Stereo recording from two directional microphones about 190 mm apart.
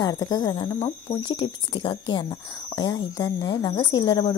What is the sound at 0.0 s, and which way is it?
A woman's voice, 20° left (ahead or behind).